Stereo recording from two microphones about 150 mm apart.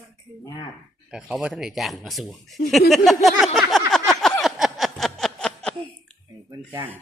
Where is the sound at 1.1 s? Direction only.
5° right (ahead or behind).